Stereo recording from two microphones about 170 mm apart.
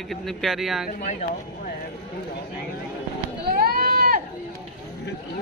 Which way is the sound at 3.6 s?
60° right (ahead or behind).